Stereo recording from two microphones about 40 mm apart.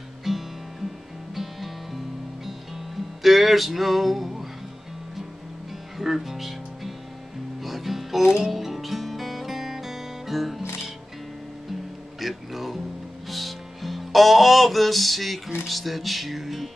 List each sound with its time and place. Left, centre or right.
0.2 s music: centre
3.2 s music: centre
5.9 s music: centre
12.2 s a sound: centre
13.3 s music: centre
15.6 s speech: centre